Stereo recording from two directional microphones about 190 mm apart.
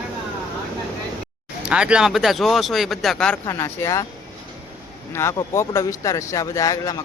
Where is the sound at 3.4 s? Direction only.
15° left (ahead or behind).